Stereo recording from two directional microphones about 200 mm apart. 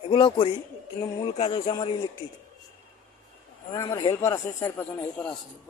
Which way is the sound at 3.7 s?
15° left (ahead or behind).